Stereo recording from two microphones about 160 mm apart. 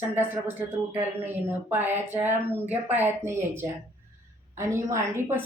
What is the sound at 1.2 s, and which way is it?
Speech, 10° right (ahead or behind).